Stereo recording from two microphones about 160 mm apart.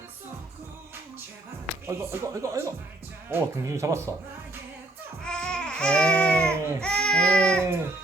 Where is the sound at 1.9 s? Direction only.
20° right (ahead or behind).